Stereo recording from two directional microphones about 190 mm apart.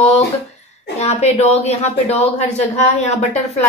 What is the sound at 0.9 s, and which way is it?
A woman's voice, 35° left (ahead or behind).